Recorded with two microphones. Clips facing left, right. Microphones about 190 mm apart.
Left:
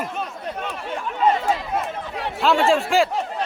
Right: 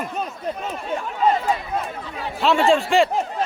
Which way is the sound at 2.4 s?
Centre (ahead or behind).